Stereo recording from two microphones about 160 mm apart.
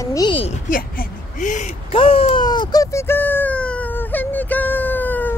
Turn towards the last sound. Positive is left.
turn(degrees=10)  # may be behind; listen again after turning